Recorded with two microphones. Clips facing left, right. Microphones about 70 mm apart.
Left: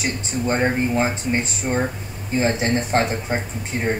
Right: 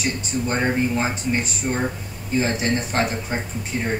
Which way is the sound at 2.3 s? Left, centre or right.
Left.